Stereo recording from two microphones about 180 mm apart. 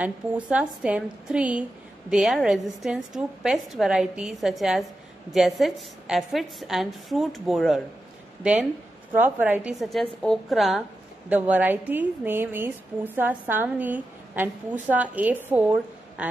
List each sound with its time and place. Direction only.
0.0 s a woman's voice: 10° right (ahead or behind)